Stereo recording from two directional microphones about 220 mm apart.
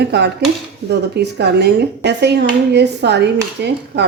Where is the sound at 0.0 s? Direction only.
50° right (ahead or behind).